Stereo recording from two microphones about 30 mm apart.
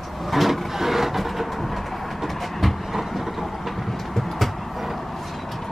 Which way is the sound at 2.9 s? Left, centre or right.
Centre.